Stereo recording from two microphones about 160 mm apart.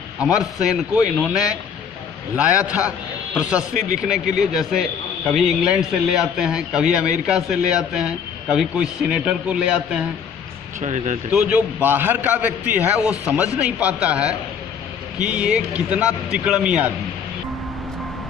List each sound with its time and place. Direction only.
0.2 s a man's voice: 5° right (ahead or behind)
10.8 s speech: 50° right (ahead or behind)
11.3 s a man's voice: 10° right (ahead or behind)